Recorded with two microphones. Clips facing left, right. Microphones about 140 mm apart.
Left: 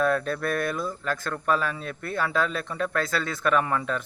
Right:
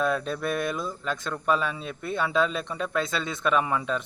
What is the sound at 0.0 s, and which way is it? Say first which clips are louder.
Speech: left 2 dB; 15° right (ahead or behind).